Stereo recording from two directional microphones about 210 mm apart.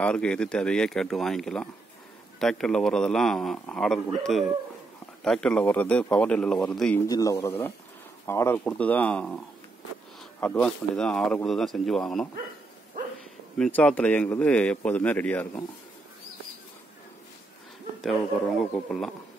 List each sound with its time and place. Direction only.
0.0 s a man's voice: 5° left (ahead or behind)
7.1 s speech: 15° left (ahead or behind)
10.4 s a man's voice: 5° left (ahead or behind)
13.6 s speech: 5° left (ahead or behind)
18.0 s a man's voice: centre (ahead or behind)